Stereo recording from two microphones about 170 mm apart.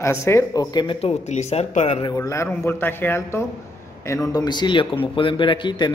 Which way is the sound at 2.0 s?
20° left (ahead or behind).